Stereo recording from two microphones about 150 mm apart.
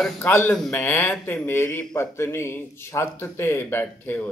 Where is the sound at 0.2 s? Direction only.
15° left (ahead or behind).